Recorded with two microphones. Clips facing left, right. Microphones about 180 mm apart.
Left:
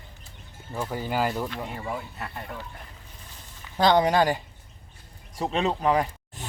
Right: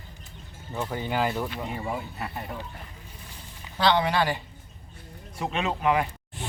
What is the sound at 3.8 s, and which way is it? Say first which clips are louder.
Speech: left 3 dB; 45° left (ahead or behind).